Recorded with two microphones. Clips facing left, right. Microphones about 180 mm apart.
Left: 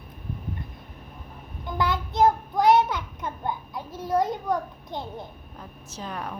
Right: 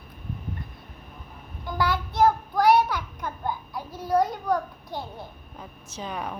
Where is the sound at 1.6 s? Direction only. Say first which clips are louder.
Even; 20° left (ahead or behind).